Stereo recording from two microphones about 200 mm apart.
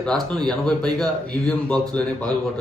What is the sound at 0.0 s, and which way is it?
A man's voice, 5° left (ahead or behind).